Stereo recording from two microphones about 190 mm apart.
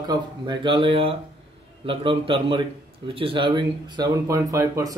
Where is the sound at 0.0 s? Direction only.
20° right (ahead or behind).